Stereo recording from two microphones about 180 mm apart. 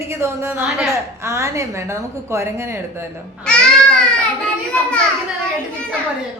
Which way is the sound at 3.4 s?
5° left (ahead or behind).